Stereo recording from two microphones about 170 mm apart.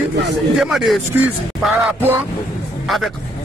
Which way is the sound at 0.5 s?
Centre (ahead or behind).